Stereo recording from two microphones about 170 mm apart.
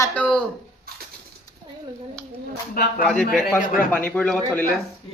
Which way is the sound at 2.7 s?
60° left (ahead or behind).